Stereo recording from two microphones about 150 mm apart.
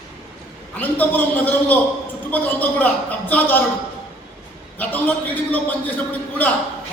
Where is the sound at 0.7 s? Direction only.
10° left (ahead or behind).